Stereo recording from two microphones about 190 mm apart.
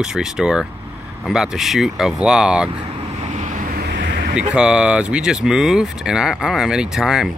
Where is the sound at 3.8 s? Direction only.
65° right (ahead or behind).